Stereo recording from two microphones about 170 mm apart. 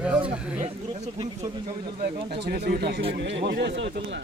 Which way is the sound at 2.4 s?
65° right (ahead or behind).